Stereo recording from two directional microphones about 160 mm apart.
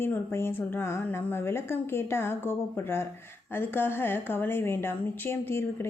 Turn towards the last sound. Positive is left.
turn(degrees=15)  # may be behind; listen again after turning